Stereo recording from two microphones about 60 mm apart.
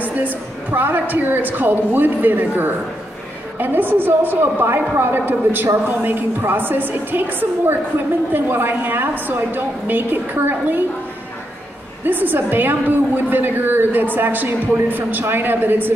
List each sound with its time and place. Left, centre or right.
0.0 s a woman's voice: right
12.1 s a woman's voice: right